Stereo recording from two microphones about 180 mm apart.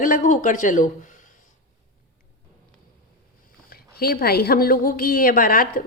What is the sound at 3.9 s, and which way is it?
A woman's voice, 60° left (ahead or behind).